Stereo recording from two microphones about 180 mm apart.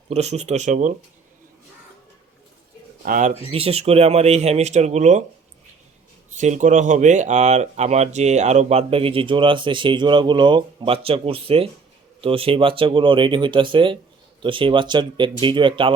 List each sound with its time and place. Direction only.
0.1 s speech: 35° right (ahead or behind)
3.0 s speech: 45° right (ahead or behind)
6.4 s speech: 40° right (ahead or behind)